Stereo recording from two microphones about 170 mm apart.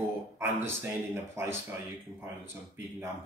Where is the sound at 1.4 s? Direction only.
15° right (ahead or behind).